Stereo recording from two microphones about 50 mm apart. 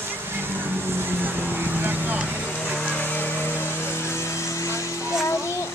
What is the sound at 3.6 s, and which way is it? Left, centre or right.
Vehicle, left.